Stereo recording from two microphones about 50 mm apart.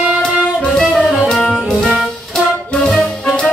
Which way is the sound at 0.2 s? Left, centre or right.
Centre.